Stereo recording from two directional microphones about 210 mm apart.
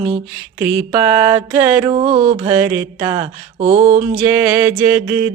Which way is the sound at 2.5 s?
10° right (ahead or behind).